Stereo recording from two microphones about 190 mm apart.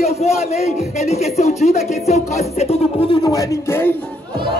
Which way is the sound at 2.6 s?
30° left (ahead or behind).